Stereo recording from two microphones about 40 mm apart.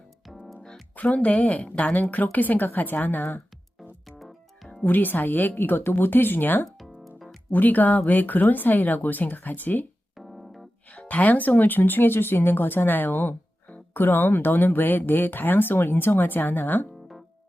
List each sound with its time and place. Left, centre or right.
0.3 s music: centre
0.9 s speech: left
4.2 s music: centre
4.9 s speech: left
6.7 s music: centre
7.5 s speech: left
10.2 s keyboard: centre
11.1 s speech: left